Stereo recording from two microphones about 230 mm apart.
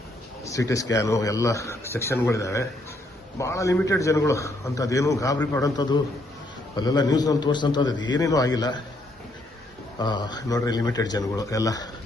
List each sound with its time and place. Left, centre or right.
0.4 s a man's voice: centre
10.0 s a man's voice: centre